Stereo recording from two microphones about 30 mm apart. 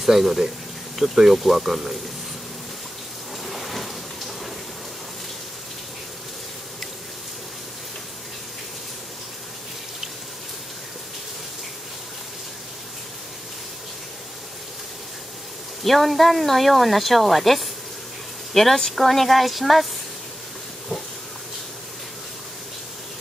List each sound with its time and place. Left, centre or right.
0.0 s speech: centre
3.4 s rain: centre
15.8 s speech: centre